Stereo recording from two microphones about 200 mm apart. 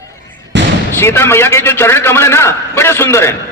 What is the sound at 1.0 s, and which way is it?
A man's voice, 10° left (ahead or behind).